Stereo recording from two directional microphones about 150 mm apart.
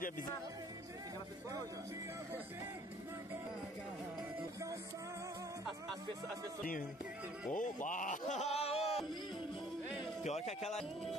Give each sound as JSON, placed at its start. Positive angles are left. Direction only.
{"t": 7.5, "sound": "speech", "side_deg": 60}
{"t": 10.2, "sound": "a man's voice", "side_deg": 45}